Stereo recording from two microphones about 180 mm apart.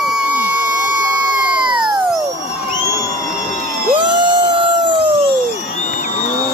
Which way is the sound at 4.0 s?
25° right (ahead or behind).